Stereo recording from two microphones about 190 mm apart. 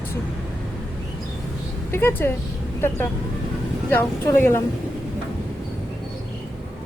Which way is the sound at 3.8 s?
10° left (ahead or behind).